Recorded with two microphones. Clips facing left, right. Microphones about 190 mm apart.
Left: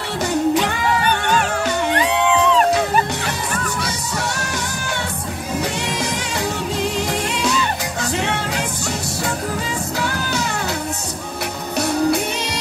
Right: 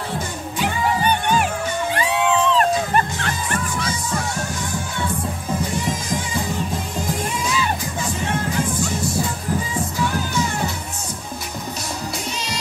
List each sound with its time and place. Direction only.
0.3 s music: 75° left (ahead or behind)
3.3 s music: 75° left (ahead or behind)